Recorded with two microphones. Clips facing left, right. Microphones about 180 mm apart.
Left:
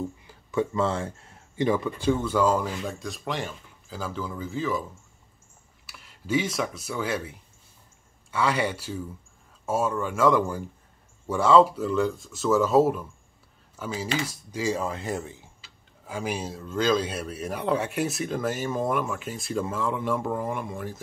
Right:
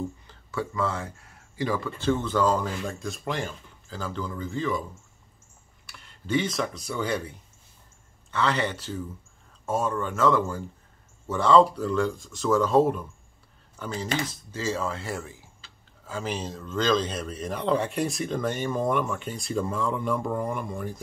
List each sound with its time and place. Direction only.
0.3 s speech: 20° left (ahead or behind); by 4.8 s centre (ahead or behind)
5.9 s speech: 5° left (ahead or behind)